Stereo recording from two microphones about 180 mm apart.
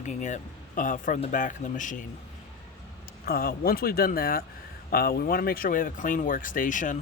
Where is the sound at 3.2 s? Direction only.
55° left (ahead or behind).